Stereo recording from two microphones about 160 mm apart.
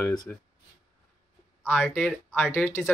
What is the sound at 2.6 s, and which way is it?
Speech, 15° left (ahead or behind).